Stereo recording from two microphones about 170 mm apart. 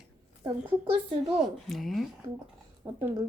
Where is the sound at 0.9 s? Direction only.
30° right (ahead or behind).